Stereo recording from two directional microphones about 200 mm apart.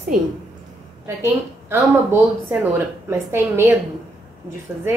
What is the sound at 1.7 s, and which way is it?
A woman's voice, 10° right (ahead or behind).